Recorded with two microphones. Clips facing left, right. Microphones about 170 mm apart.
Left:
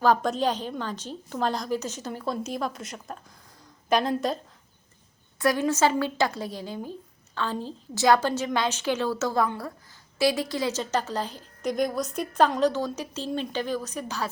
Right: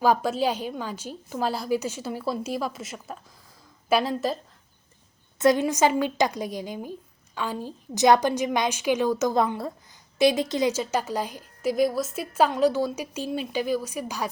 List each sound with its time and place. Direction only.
0.0 s a woman's voice: 10° right (ahead or behind)
5.4 s a woman's voice: 20° right (ahead or behind)
10.7 s a woman's voice: 10° right (ahead or behind)